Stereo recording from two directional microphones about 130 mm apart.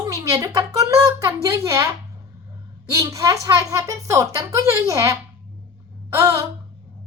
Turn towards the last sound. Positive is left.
turn(degrees=-20)  # may be behind; listen again after turning